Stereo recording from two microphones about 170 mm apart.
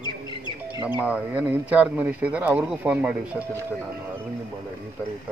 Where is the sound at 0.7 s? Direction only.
10° right (ahead or behind).